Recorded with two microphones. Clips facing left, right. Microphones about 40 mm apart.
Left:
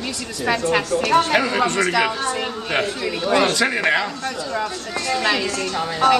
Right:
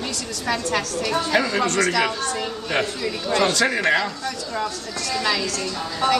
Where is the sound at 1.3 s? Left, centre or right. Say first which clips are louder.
Left 2 dB; left.